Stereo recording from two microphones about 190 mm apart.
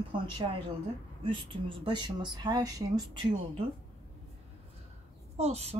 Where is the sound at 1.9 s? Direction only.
25° right (ahead or behind).